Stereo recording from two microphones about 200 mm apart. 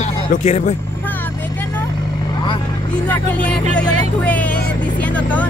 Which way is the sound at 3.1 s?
5° left (ahead or behind).